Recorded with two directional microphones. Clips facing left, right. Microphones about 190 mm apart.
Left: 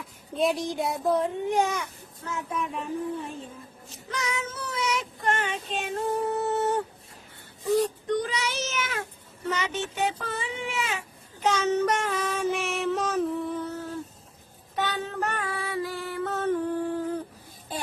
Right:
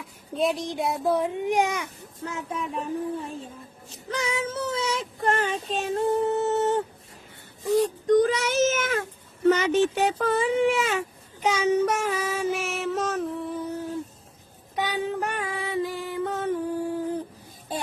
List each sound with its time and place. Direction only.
0.0 s a child's voice: centre (ahead or behind); by 2.6 s 25° right (ahead or behind)
4.1 s child singing: 30° right (ahead or behind)
8.0 s speech: 45° right (ahead or behind)
11.4 s child singing: 10° right (ahead or behind)
14.8 s female singing: 10° right (ahead or behind)